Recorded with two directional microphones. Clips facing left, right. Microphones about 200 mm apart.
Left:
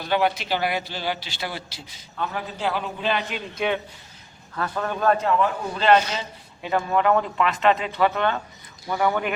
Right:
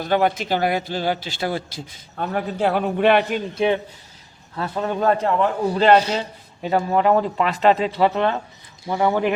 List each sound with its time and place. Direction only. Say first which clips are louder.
0.0 s speech: right 3 dB; 45° right (ahead or behind); by 3.2 s 65° right (ahead or behind)
4.5 s a man's voice: right 3 dB; 25° right (ahead or behind)